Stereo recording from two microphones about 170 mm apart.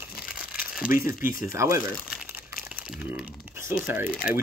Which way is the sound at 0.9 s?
55° left (ahead or behind).